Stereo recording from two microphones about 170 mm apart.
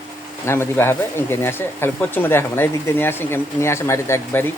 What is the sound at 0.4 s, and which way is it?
Speech, 15° left (ahead or behind).